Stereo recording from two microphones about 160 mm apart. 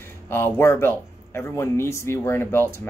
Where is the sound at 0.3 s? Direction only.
15° left (ahead or behind).